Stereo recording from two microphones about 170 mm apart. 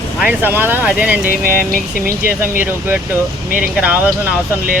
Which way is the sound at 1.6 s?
55° left (ahead or behind).